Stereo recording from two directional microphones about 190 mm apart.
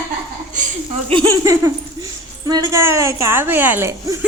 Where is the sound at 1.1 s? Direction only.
20° right (ahead or behind).